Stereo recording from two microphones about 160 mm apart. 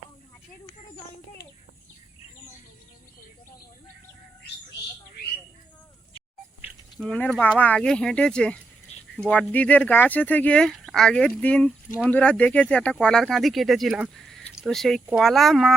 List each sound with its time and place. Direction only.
7.0 s speech: 10° left (ahead or behind)